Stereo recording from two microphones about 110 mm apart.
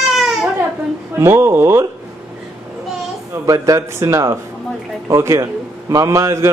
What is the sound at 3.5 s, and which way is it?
A man's voice, 30° right (ahead or behind).